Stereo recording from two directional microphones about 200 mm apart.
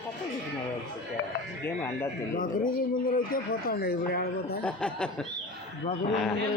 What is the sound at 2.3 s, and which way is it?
Speech, 40° left (ahead or behind).